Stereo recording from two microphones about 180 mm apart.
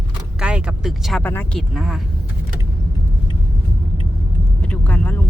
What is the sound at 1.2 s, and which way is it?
Speech, 10° left (ahead or behind).